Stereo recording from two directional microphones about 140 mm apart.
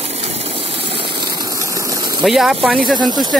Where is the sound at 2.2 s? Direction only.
Centre (ahead or behind).